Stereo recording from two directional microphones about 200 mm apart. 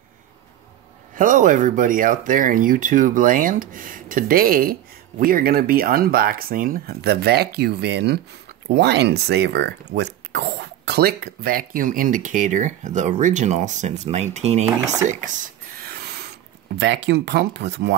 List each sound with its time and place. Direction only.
1.1 s speech: 40° right (ahead or behind)
14.8 s speech: 15° right (ahead or behind)
15.0 s speech: 40° right (ahead or behind); by 17.9 s 60° right (ahead or behind)